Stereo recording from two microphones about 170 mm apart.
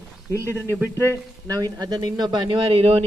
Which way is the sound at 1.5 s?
20° right (ahead or behind).